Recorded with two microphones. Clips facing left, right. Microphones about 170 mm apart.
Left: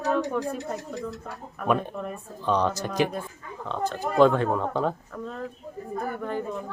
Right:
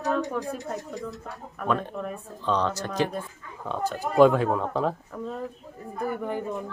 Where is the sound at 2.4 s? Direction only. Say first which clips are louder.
Left 1 dB; 15° left (ahead or behind).